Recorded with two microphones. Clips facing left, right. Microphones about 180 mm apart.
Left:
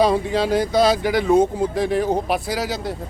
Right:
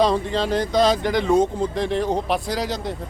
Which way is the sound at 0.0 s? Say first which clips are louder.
Left 2 dB; 10° left (ahead or behind).